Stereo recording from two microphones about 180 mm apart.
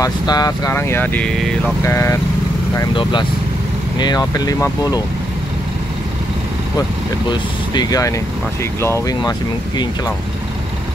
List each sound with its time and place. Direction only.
0.0 s speech: 20° left (ahead or behind)
2.7 s speech: 25° left (ahead or behind)
7.2 s speech: 20° left (ahead or behind)